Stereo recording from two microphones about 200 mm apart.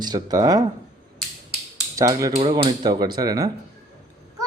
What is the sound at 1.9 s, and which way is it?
Speech, 15° right (ahead or behind).